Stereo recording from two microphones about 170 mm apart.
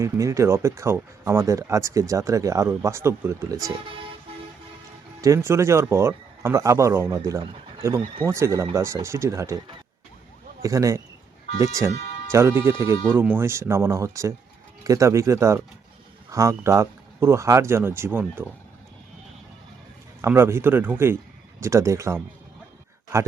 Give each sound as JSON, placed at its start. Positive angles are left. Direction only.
{"t": 0.0, "sound": "speech", "side_deg": -20}
{"t": 5.2, "sound": "speech", "side_deg": -15}
{"t": 10.6, "sound": "speech", "side_deg": -20}
{"t": 20.2, "sound": "speech", "side_deg": -15}